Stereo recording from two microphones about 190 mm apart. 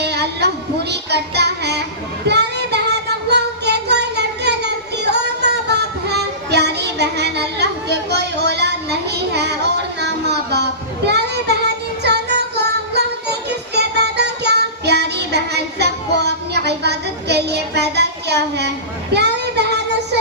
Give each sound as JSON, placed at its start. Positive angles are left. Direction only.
{"t": 0.0, "sound": "music", "side_deg": -60}
{"t": 2.2, "sound": "child singing", "side_deg": -60}
{"t": 12.0, "sound": "music", "side_deg": -60}
{"t": 13.7, "sound": "child singing", "side_deg": -60}